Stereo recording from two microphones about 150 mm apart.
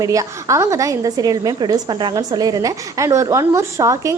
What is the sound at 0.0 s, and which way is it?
A woman's voice, 20° right (ahead or behind).